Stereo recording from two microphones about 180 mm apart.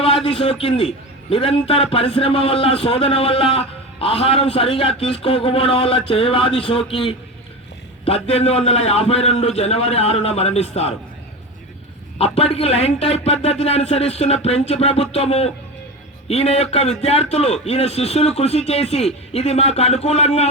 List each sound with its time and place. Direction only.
0.0 s a man's voice: 30° left (ahead or behind)
12.1 s a man's voice: 35° left (ahead or behind)